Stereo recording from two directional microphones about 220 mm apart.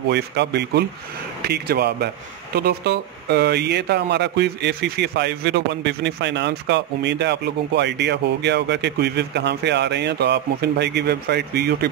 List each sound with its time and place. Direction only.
0.1 s speech: 50° right (ahead or behind)